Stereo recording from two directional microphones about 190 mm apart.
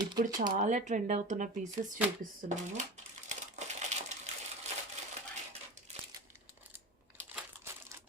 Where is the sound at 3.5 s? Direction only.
40° right (ahead or behind).